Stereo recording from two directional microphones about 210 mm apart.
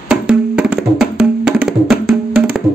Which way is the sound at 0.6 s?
Centre (ahead or behind).